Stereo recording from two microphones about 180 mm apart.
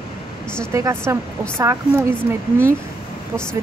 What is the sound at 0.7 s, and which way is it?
Speech, 15° right (ahead or behind).